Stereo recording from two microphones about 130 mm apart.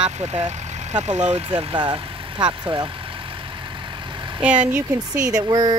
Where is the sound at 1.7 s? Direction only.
35° right (ahead or behind).